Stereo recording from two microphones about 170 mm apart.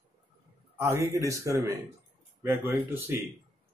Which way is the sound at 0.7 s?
15° right (ahead or behind).